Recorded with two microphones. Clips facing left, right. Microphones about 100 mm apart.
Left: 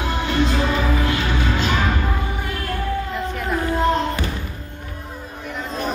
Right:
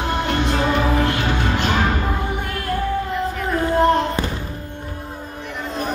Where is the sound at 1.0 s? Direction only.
60° right (ahead or behind).